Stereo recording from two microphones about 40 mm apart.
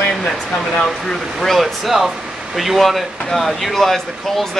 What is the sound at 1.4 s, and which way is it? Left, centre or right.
Speech, centre.